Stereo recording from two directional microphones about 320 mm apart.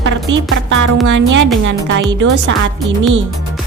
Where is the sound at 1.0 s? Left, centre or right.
Right.